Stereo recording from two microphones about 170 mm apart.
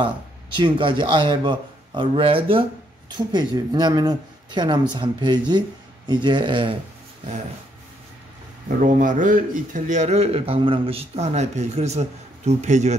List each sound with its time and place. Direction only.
0.6 s speech: 30° right (ahead or behind)
8.6 s a man's voice: 50° right (ahead or behind)